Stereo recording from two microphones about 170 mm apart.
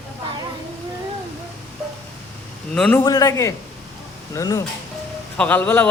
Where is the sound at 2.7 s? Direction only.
5° left (ahead or behind).